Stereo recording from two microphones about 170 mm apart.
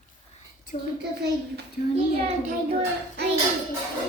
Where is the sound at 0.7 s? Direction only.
30° left (ahead or behind).